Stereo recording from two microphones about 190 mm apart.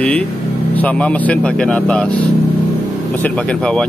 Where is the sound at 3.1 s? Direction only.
5° left (ahead or behind).